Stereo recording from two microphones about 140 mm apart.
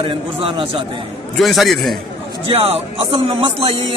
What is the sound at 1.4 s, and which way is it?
Speech, centre (ahead or behind).